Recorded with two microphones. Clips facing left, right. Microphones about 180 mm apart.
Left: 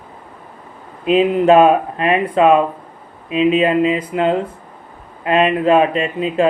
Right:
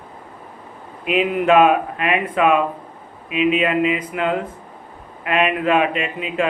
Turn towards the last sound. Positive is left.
turn(degrees=35)  # may be behind; listen again after turning